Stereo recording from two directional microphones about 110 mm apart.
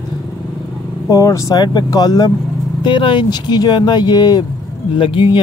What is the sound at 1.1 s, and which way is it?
Speech, 30° left (ahead or behind).